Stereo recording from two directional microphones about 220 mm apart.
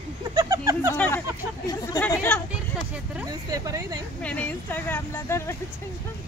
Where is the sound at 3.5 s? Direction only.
15° right (ahead or behind).